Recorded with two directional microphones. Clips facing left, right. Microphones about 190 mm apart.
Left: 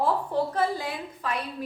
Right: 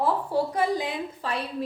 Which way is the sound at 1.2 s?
30° right (ahead or behind).